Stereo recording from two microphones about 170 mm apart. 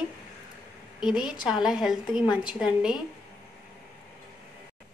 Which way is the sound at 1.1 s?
25° left (ahead or behind).